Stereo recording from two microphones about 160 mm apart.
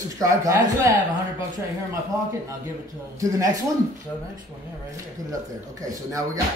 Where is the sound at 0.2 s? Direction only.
20° right (ahead or behind).